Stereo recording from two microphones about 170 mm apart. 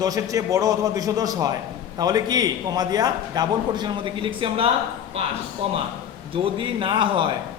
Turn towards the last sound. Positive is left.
turn(degrees=-30)  # may be behind; listen again after turning